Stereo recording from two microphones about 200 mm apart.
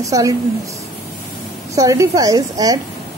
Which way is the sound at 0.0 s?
15° right (ahead or behind).